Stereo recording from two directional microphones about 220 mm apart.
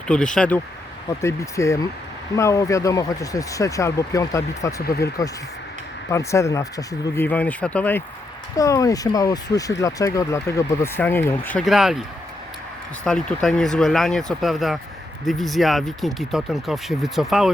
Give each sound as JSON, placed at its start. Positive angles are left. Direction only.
{"t": 0.1, "sound": "speech", "side_deg": 5}
{"t": 4.9, "sound": "speech", "side_deg": 45}
{"t": 6.1, "sound": "speech", "side_deg": 15}
{"t": 13.1, "sound": "speech", "side_deg": 5}